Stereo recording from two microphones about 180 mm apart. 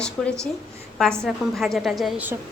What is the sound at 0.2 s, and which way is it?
A woman's voice, 5° left (ahead or behind).